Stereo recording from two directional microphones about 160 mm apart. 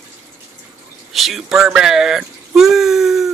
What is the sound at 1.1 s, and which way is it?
Speech, centre (ahead or behind).